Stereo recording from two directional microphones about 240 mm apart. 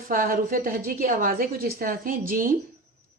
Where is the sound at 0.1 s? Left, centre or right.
Right.